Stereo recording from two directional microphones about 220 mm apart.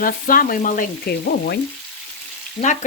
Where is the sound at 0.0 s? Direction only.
40° left (ahead or behind).